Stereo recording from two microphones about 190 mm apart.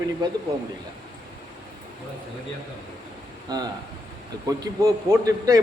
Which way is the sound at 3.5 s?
20° right (ahead or behind).